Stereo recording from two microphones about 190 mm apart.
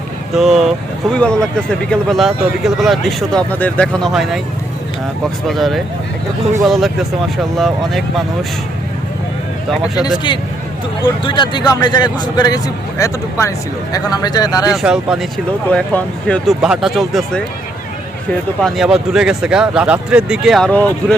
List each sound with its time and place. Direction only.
0.3 s speech: centre (ahead or behind)
5.5 s speech: centre (ahead or behind)
9.9 s a man's voice: 20° left (ahead or behind)
14.7 s speech: 5° right (ahead or behind)
18.6 s speech: centre (ahead or behind)